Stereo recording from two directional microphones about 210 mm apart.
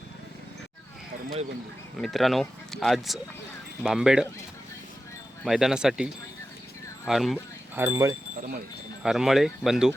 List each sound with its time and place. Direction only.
2.0 s speech: centre (ahead or behind)
5.5 s speech: centre (ahead or behind)
7.8 s speech: 15° right (ahead or behind)
8.4 s speech: 45° right (ahead or behind)
9.0 s speech: centre (ahead or behind)